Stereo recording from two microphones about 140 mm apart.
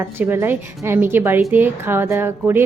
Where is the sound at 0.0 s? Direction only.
15° right (ahead or behind).